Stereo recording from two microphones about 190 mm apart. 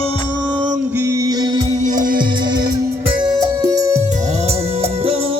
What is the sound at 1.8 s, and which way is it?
Music, 45° right (ahead or behind).